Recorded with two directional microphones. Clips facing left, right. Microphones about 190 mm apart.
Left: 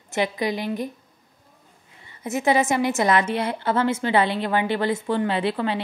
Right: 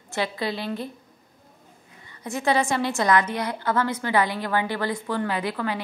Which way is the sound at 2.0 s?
20° left (ahead or behind).